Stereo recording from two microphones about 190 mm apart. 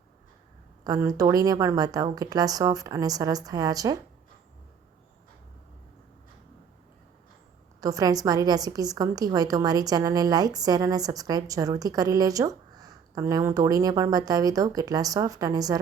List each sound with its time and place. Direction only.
0.9 s a woman's voice: 20° right (ahead or behind)
7.8 s a woman's voice: 20° right (ahead or behind)